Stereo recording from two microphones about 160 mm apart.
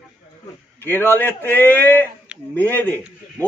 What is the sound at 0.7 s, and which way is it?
A man's voice, 15° left (ahead or behind).